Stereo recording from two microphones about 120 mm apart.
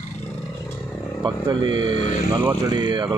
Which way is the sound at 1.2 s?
40° right (ahead or behind).